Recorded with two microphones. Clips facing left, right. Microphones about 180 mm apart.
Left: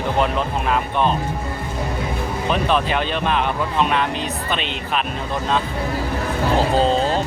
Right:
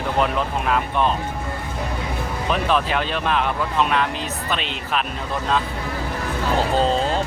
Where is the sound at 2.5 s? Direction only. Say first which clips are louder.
Left 1 dB; centre (ahead or behind).